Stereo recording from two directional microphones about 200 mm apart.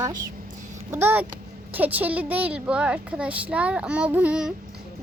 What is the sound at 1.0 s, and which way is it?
A woman's voice, 10° right (ahead or behind).